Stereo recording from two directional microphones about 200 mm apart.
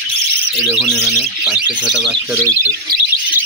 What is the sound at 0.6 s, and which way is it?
Speech, centre (ahead or behind).